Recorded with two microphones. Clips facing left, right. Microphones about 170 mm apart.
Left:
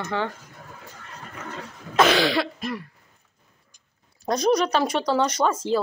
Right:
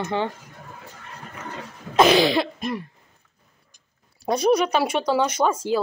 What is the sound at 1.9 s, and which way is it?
Speech, 15° right (ahead or behind).